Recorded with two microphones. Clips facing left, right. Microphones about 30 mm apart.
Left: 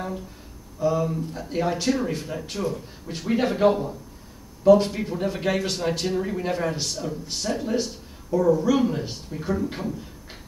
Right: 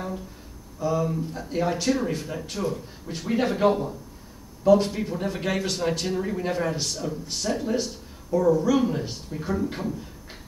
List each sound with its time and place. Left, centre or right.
0.7 s speech: centre